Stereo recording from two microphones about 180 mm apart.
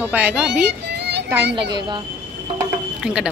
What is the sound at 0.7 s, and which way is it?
Children playing, 70° right (ahead or behind).